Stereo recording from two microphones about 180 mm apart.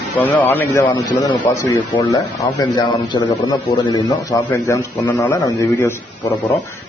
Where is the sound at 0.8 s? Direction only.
25° left (ahead or behind).